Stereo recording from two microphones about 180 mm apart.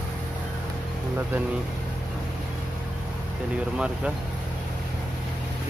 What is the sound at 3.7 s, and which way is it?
Speech, 5° right (ahead or behind).